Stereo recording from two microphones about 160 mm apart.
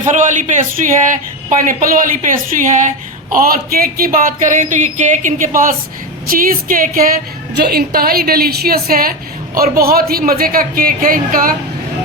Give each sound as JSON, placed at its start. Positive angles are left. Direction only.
{"t": 0.1, "sound": "a man's voice", "side_deg": -50}
{"t": 3.3, "sound": "speech", "side_deg": -65}
{"t": 6.2, "sound": "speech", "side_deg": -60}
{"t": 7.5, "sound": "a woman's voice", "side_deg": -80}